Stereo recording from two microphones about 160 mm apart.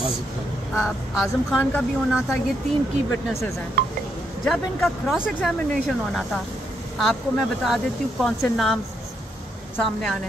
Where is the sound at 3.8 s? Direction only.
70° right (ahead or behind).